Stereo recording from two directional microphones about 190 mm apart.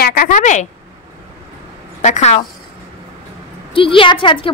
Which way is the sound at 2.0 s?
35° left (ahead or behind).